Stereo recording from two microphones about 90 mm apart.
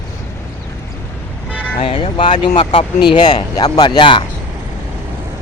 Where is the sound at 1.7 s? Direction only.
90° left; by 4.2 s 65° left (ahead or behind).